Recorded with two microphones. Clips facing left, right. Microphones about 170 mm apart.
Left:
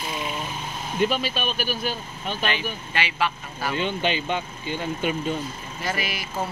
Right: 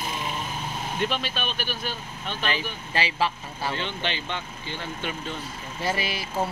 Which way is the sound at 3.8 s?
15° left (ahead or behind).